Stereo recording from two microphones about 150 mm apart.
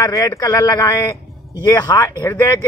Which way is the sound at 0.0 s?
20° left (ahead or behind).